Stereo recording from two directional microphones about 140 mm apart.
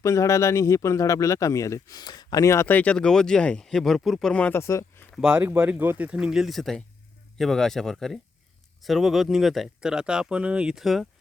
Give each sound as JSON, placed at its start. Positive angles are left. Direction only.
{"t": 0.0, "sound": "a man's voice", "side_deg": 20}
{"t": 5.1, "sound": "speech", "side_deg": -5}